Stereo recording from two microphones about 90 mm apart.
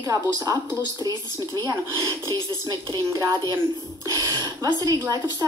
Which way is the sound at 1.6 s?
40° left (ahead or behind).